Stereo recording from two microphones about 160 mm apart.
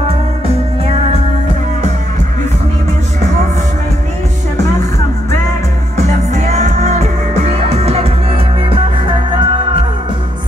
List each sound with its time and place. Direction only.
6.3 s music: 45° right (ahead or behind)